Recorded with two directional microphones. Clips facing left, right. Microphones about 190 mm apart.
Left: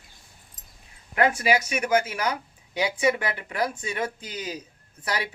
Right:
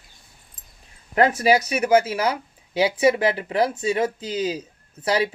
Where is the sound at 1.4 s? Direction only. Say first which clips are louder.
Right 5 dB; 30° right (ahead or behind).